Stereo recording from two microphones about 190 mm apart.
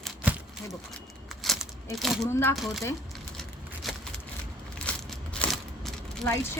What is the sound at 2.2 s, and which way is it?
Speech, 15° left (ahead or behind).